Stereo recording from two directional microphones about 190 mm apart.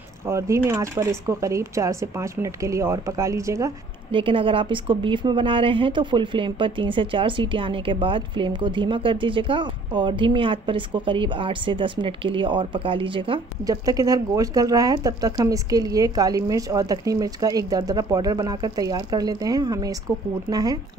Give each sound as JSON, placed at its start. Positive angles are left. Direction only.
{"t": 0.3, "sound": "speech", "side_deg": -15}
{"t": 4.1, "sound": "a woman's voice", "side_deg": -30}